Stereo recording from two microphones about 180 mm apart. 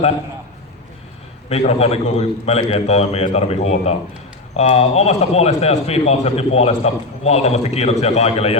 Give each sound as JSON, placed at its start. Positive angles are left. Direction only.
{"t": 1.5, "sound": "speech", "side_deg": 35}